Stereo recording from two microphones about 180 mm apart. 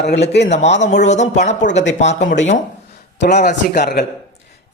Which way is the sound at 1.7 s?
80° left.